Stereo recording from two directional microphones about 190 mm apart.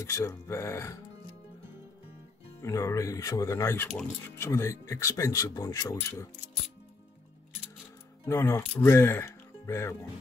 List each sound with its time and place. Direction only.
0.0 s speech: 15° left (ahead or behind)
2.6 s speech: 15° left (ahead or behind)
8.3 s speech: 15° left (ahead or behind)